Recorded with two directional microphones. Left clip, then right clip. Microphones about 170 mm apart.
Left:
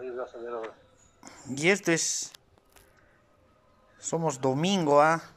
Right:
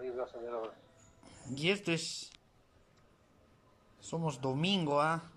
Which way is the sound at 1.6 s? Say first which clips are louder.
Left 9 dB; 35° left (ahead or behind).